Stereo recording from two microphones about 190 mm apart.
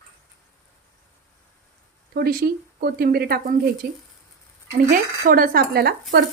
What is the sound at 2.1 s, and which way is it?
Speech, 55° right (ahead or behind).